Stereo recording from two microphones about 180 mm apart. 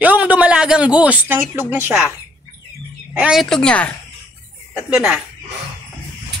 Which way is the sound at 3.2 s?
Centre (ahead or behind).